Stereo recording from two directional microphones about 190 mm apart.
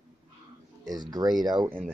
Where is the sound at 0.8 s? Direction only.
20° right (ahead or behind).